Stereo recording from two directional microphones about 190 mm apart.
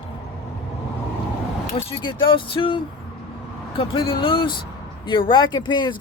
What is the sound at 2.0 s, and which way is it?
Speech, 25° left (ahead or behind).